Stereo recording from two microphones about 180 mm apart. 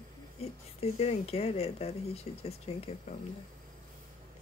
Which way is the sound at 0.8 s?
35° left (ahead or behind).